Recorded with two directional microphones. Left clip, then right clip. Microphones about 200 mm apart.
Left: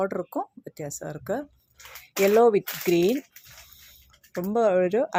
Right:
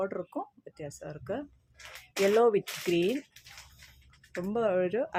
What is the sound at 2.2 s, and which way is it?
Speech, 20° left (ahead or behind).